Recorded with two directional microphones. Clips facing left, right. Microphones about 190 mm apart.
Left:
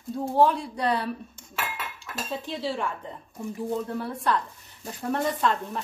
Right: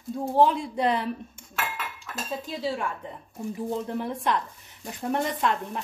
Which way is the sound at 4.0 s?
15° right (ahead or behind).